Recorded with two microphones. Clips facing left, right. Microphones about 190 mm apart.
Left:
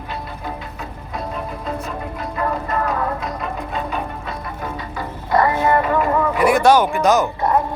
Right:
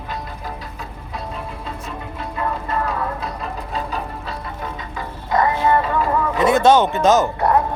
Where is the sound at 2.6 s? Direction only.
30° right (ahead or behind).